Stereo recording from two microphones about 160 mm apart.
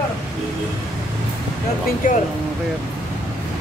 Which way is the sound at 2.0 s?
60° left (ahead or behind).